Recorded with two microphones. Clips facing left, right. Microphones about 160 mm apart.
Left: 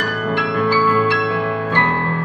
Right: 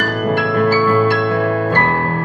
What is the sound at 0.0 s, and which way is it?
Music, 45° right (ahead or behind).